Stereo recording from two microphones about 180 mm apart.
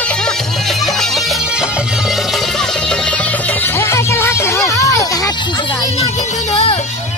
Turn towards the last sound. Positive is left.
turn(degrees=20)  # may be behind; listen again after turning